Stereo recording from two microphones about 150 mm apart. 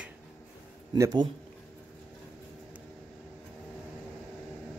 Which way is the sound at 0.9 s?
25° right (ahead or behind).